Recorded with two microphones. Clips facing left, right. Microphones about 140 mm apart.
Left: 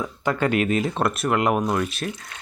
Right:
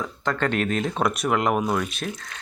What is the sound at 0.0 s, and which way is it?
Speech, 10° left (ahead or behind).